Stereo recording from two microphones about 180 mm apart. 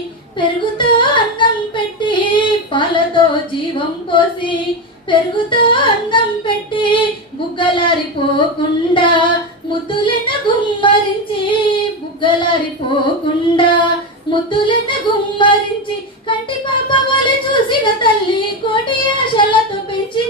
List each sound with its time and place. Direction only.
0.4 s speech: 25° left (ahead or behind)
5.1 s female singing: 30° left (ahead or behind)
16.3 s speech: 25° left (ahead or behind)